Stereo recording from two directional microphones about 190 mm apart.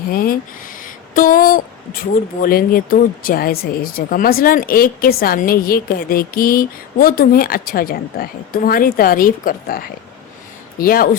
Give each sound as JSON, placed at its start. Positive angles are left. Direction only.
{"t": 0.1, "sound": "speech", "side_deg": 50}
{"t": 0.8, "sound": "a sound", "side_deg": 45}
{"t": 2.4, "sound": "speech", "side_deg": 50}